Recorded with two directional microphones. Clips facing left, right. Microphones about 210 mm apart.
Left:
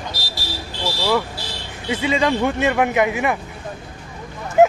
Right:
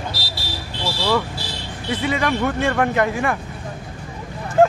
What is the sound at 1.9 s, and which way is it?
Speech, 15° left (ahead or behind).